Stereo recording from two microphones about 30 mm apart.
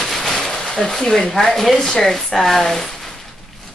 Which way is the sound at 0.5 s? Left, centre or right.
Left.